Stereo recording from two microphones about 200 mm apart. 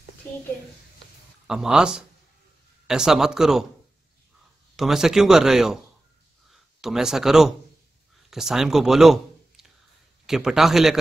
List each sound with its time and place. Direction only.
1.5 s speech: 5° right (ahead or behind)
4.7 s speech: centre (ahead or behind)